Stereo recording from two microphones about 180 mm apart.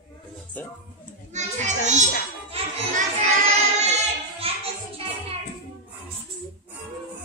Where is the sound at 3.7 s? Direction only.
40° right (ahead or behind).